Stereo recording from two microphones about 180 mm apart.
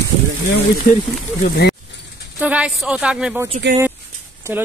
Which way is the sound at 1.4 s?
65° left (ahead or behind).